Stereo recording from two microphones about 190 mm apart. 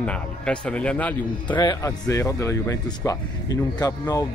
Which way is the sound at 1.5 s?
20° left (ahead or behind).